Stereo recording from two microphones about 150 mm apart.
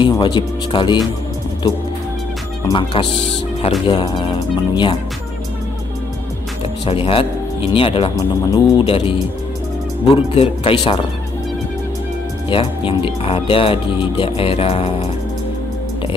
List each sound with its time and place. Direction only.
0.0 s speech: 30° left (ahead or behind)
2.7 s speech: 35° left (ahead or behind)
6.9 s speech: 35° left (ahead or behind)
8.4 s speech: 25° left (ahead or behind)
10.3 s speech: 40° left (ahead or behind)
12.4 s speech: 35° left (ahead or behind)